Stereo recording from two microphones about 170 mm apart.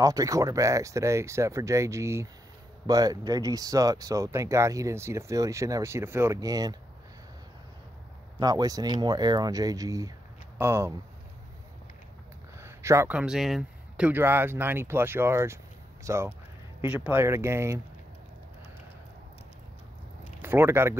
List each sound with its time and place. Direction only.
0.0 s speech: 20° right (ahead or behind)
8.4 s speech: 20° right (ahead or behind)
12.5 s a man's voice: 15° right (ahead or behind)
20.4 s speech: 15° right (ahead or behind)